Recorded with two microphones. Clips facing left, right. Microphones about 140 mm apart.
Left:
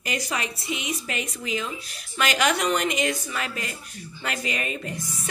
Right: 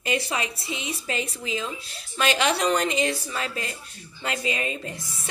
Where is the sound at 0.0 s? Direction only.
30° right (ahead or behind).